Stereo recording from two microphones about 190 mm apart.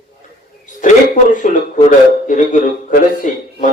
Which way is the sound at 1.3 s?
45° left (ahead or behind).